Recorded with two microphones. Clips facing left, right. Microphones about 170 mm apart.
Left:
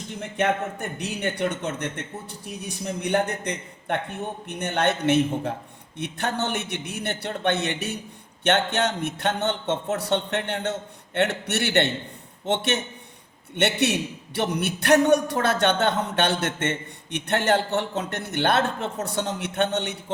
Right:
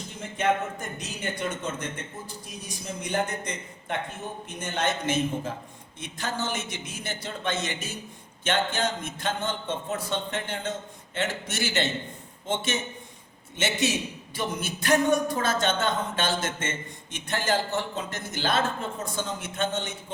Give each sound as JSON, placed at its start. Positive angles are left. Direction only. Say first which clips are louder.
{"t": 0.2, "sound": "a man's voice", "louder": "left 1 dB", "side_deg": 65}